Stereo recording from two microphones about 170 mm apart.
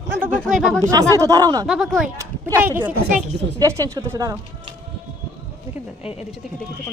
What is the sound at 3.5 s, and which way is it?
Speech, 20° right (ahead or behind).